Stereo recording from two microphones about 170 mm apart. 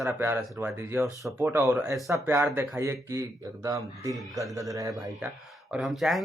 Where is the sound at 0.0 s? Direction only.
15° right (ahead or behind).